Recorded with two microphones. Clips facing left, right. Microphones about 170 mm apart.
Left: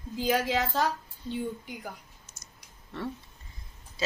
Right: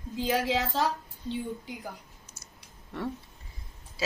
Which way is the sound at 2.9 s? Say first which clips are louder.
Right 1 dB; 15° right (ahead or behind).